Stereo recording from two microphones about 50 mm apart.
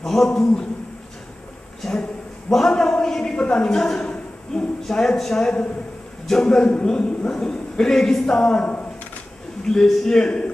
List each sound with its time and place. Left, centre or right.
0.0 s a man's voice: centre
2.5 s a man's voice: centre
9.7 s a man's voice: centre